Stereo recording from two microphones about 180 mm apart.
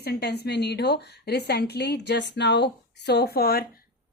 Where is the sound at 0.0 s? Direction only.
65° left (ahead or behind).